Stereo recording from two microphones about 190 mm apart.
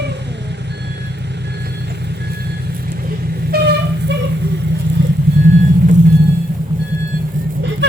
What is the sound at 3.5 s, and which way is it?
Vehicle, 60° right (ahead or behind).